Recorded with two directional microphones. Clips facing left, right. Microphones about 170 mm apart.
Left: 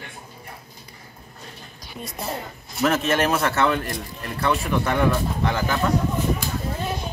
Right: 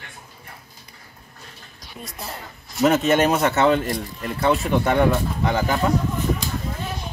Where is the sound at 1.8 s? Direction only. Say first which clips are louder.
Left 2 dB; centre (ahead or behind).